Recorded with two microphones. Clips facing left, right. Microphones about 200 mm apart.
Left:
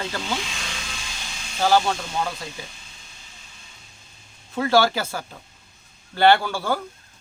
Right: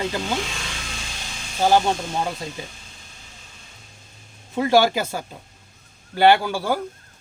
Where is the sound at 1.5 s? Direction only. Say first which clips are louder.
Right 2 dB; 15° right (ahead or behind).